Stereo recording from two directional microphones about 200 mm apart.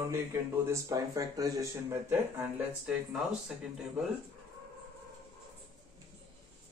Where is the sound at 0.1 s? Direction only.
15° right (ahead or behind).